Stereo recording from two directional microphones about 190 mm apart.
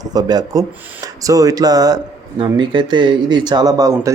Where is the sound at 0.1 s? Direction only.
20° right (ahead or behind).